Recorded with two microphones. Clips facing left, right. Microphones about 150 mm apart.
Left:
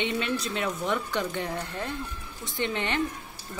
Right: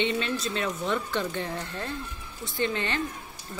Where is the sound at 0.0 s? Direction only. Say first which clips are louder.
Right 1 dB; 10° left (ahead or behind).